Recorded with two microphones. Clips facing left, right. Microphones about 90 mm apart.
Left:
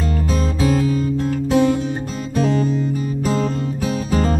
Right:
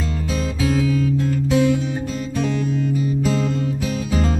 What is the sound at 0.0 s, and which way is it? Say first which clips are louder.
Music: left 3 dB; 45° left (ahead or behind).